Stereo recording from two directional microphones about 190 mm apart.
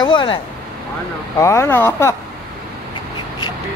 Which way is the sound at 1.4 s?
15° left (ahead or behind).